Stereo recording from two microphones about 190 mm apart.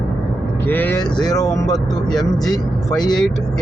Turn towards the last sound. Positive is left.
turn(degrees=20)  # may be behind; listen again after turning